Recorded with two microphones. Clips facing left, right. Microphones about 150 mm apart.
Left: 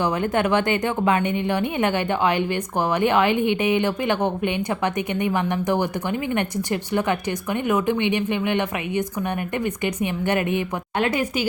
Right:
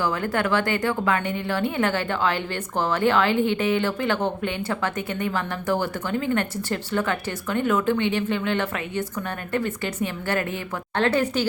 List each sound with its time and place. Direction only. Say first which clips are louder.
0.0 s a woman's voice: left 3 dB; 20° left (ahead or behind)